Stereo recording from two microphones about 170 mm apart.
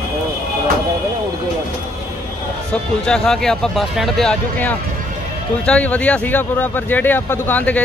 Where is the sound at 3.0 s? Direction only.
5° left (ahead or behind).